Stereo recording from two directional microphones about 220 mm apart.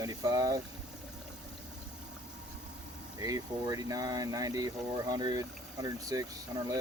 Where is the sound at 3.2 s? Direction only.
15° right (ahead or behind).